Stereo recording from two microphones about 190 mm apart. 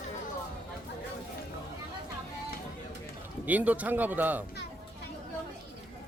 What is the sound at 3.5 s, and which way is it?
Speech, 10° right (ahead or behind).